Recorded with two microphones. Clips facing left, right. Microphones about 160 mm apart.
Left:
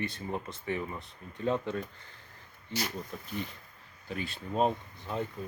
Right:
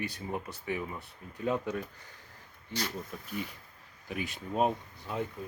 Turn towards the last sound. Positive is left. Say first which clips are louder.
# even
turn(degrees=-5)  # may be behind; listen again after turning